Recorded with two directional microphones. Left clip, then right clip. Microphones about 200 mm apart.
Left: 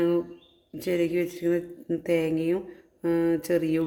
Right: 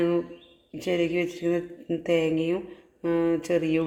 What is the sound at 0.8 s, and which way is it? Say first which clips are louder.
Speech: even; 5° left (ahead or behind).